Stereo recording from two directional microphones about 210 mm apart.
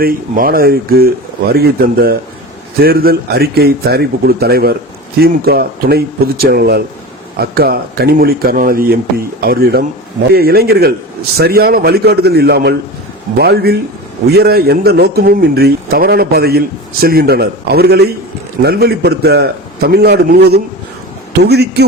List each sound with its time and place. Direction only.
0.0 s speech: 45° right (ahead or behind)